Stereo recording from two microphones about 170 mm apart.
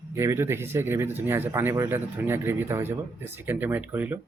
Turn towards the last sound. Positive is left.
turn(degrees=-10)  # may be behind; listen again after turning